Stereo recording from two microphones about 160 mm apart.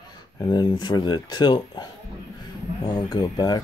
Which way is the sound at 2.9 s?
25° left (ahead or behind).